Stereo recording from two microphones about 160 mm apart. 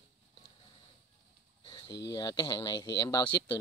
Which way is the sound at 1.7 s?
30° left (ahead or behind).